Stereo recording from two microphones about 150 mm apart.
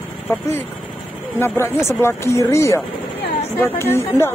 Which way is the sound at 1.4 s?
15° left (ahead or behind).